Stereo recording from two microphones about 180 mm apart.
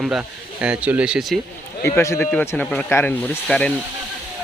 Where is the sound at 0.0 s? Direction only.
5° right (ahead or behind).